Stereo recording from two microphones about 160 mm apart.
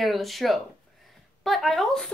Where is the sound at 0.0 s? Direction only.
Centre (ahead or behind).